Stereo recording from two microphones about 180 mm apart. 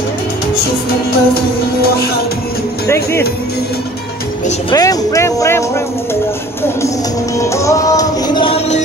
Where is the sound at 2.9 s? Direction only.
15° left (ahead or behind).